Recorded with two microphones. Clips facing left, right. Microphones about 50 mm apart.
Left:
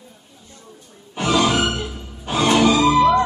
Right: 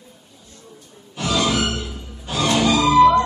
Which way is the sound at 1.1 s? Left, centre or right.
Left.